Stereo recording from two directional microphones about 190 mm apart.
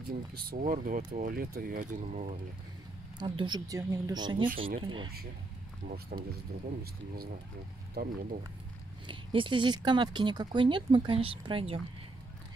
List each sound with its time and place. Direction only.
0.1 s speech: 50° right (ahead or behind)
3.2 s speech: 25° right (ahead or behind)
5.9 s speech: 50° right (ahead or behind)
7.9 s speech: 50° right (ahead or behind)
9.0 s speech: 25° right (ahead or behind)